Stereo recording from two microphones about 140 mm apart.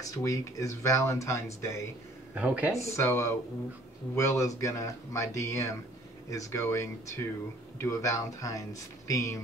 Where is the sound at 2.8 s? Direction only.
20° left (ahead or behind).